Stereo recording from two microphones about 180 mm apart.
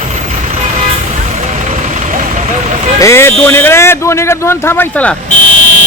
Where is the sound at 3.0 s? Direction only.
15° left (ahead or behind).